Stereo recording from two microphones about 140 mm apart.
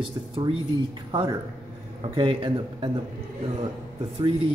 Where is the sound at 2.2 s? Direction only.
40° right (ahead or behind).